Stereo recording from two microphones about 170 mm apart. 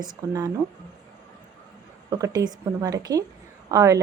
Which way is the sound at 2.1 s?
20° right (ahead or behind).